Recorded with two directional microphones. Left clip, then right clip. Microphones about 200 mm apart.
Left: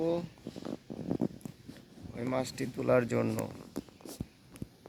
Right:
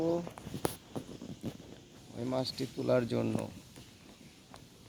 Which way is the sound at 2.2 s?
15° left (ahead or behind).